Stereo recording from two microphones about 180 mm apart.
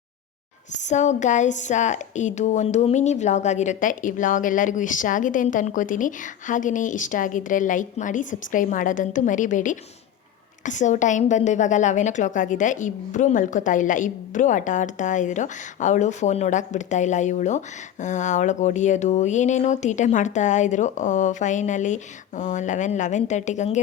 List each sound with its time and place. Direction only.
0.9 s a woman's voice: 40° left (ahead or behind)